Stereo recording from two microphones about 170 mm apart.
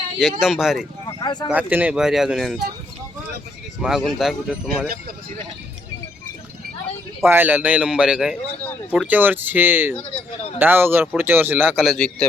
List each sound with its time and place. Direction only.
0.2 s speech: centre (ahead or behind)
1.0 s a sound: 25° left (ahead or behind)
1.5 s speech: 10° right (ahead or behind)
3.8 s speech: 5° right (ahead or behind)
4.9 s speech: 60° right (ahead or behind)
7.3 s speech: 10° right (ahead or behind)
10.0 s a sound: 35° left (ahead or behind)
10.6 s speech: 10° right (ahead or behind)